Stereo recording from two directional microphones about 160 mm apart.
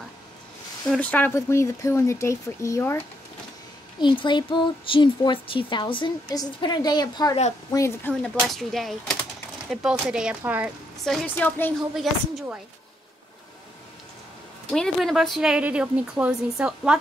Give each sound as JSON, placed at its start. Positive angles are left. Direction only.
{"t": 0.8, "sound": "speech", "side_deg": 10}
{"t": 4.0, "sound": "a woman's voice", "side_deg": 30}
{"t": 8.2, "sound": "a woman's voice", "side_deg": 0}
{"t": 11.1, "sound": "speech", "side_deg": 5}
{"t": 11.9, "sound": "a woman's voice", "side_deg": 0}
{"t": 14.7, "sound": "a woman's voice", "side_deg": 5}